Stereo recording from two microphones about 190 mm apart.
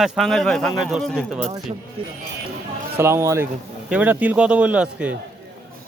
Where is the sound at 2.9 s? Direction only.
15° right (ahead or behind).